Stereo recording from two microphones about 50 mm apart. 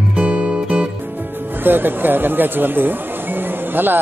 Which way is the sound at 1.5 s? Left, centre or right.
Right.